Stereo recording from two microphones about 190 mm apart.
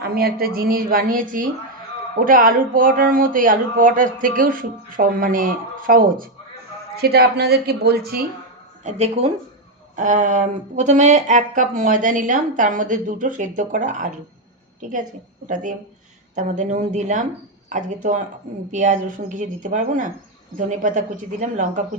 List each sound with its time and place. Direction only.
0.0 s speech: 55° right (ahead or behind)
8.8 s a woman's voice: 35° right (ahead or behind)
16.3 s a woman's voice: 40° right (ahead or behind)